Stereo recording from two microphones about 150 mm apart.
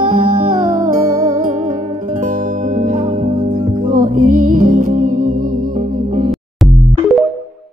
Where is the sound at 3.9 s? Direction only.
70° right (ahead or behind).